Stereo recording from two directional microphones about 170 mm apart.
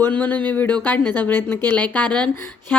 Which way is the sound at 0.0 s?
10° left (ahead or behind).